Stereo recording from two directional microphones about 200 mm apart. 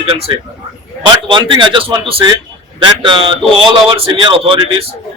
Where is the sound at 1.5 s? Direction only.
25° right (ahead or behind).